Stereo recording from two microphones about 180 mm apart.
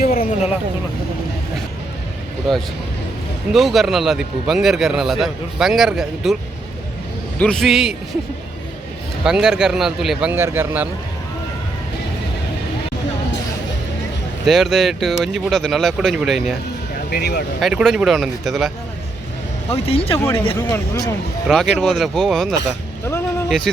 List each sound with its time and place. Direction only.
0.0 s speech: 55° left (ahead or behind)
3.5 s speech: centre (ahead or behind)
7.3 s speech: 5° left (ahead or behind)
9.2 s speech: 5° right (ahead or behind)
14.4 s speech: centre (ahead or behind)
17.1 s speech: 60° left (ahead or behind)
17.6 s speech: centre (ahead or behind)
19.7 s speech: 30° left (ahead or behind)
20.1 s speech: 15° left (ahead or behind)
21.4 s speech: centre (ahead or behind)